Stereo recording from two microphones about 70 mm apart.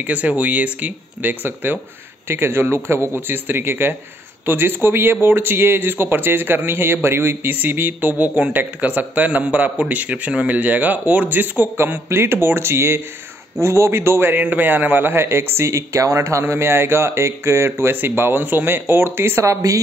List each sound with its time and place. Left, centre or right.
0.0 s speech: right